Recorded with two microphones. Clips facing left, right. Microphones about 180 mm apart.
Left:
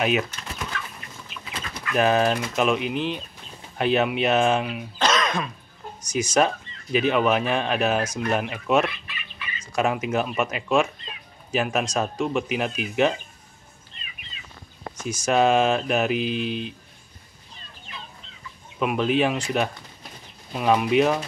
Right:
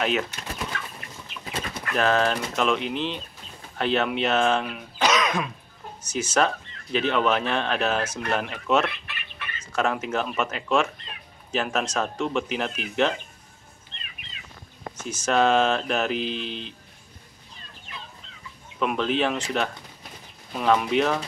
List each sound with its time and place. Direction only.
0.0 s speech: 15° left (ahead or behind)
2.0 s speech: 15° left (ahead or behind)
4.9 s throat clearing: 10° right (ahead or behind)
6.0 s speech: 15° left (ahead or behind)
9.0 s chicken: 65° right (ahead or behind)
9.6 s speech: 10° left (ahead or behind)
13.9 s bird: 70° right (ahead or behind)
15.0 s speech: 10° left (ahead or behind)
18.8 s speech: 10° left (ahead or behind)